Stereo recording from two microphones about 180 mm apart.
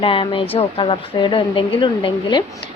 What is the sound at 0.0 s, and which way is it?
Speech, 30° left (ahead or behind).